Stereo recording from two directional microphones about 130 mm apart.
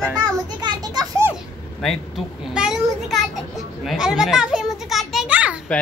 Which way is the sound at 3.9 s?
5° right (ahead or behind).